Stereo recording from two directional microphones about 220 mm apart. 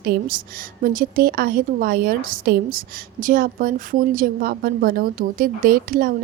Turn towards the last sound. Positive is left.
turn(degrees=-40)  # may be behind; listen again after turning